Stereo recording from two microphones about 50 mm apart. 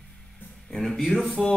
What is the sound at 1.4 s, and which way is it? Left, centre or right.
Music, centre.